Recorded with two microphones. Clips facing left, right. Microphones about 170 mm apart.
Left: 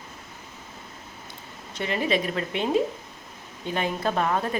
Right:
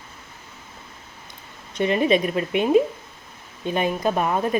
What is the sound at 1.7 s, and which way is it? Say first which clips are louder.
Speech: right 6 dB; 20° right (ahead or behind).